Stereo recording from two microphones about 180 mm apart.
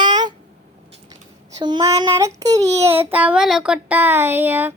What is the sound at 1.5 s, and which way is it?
Child singing, 20° right (ahead or behind).